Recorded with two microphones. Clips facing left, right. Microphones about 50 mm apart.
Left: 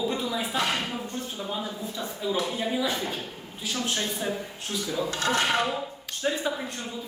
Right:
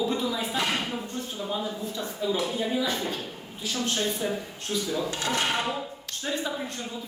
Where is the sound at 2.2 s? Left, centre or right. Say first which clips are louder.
Right 2 dB; centre.